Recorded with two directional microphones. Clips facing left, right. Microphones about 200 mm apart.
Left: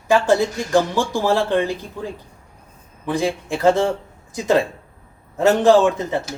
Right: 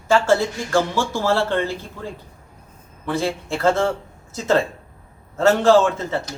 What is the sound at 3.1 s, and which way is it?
Speech, 15° left (ahead or behind).